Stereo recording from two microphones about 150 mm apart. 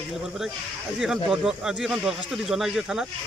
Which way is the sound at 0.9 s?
5° right (ahead or behind).